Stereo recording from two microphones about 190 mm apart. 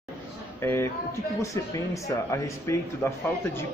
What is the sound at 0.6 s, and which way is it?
Speech, 15° left (ahead or behind).